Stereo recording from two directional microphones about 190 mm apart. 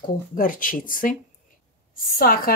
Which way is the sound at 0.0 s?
45° left (ahead or behind).